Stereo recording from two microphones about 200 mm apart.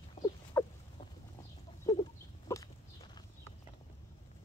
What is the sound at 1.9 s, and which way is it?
Chicken, 20° left (ahead or behind).